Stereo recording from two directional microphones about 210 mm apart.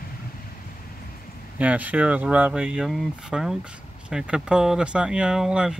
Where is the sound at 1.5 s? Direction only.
5° right (ahead or behind).